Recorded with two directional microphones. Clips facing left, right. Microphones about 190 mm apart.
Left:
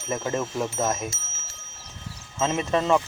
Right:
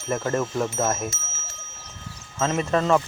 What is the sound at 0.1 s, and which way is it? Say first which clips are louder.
Speech: right 3 dB; 5° left (ahead or behind).